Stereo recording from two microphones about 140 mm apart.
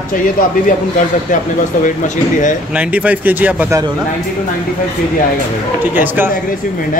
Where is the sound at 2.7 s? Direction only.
10° right (ahead or behind).